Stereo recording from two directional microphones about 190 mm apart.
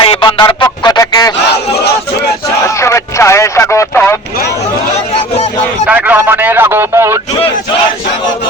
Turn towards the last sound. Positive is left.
turn(degrees=-15)  # may be behind; listen again after turning